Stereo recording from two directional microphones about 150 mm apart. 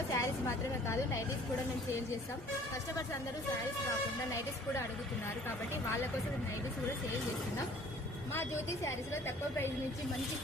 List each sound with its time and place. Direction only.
0.1 s speech: 20° left (ahead or behind)
8.3 s speech: 15° left (ahead or behind)